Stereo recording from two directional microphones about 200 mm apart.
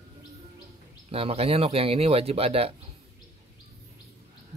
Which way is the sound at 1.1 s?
30° right (ahead or behind).